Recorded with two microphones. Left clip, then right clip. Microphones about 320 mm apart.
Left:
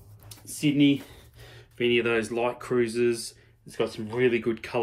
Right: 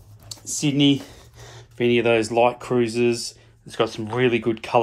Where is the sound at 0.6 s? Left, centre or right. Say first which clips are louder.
Right 3 dB; centre.